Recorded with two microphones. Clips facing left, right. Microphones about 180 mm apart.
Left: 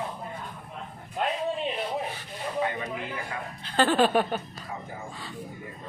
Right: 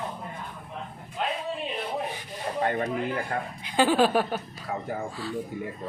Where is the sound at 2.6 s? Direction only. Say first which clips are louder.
Right 5 dB; 50° right (ahead or behind).